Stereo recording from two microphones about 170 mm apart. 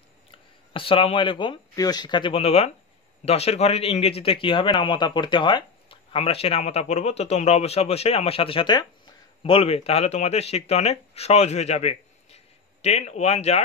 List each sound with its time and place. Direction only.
0.7 s speech: 30° left (ahead or behind)